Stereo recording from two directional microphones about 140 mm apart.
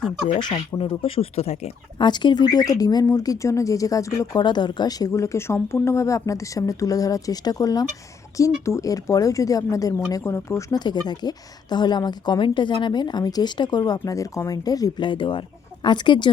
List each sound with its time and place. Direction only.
0.3 s speech: 35° left (ahead or behind)
2.0 s speech: 30° left (ahead or behind)